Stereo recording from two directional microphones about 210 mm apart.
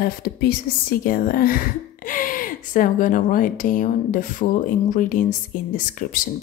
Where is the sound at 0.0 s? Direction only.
45° left (ahead or behind).